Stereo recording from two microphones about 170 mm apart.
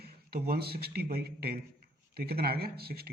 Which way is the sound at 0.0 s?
65° right (ahead or behind).